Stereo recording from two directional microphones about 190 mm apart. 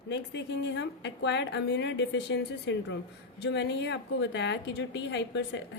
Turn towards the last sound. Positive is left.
turn(degrees=65)  # may be behind; listen again after turning